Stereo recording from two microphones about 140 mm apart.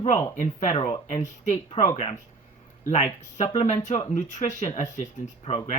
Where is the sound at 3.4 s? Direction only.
50° left (ahead or behind).